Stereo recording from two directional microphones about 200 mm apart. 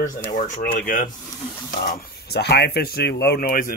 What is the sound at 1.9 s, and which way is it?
Speech, 55° left (ahead or behind).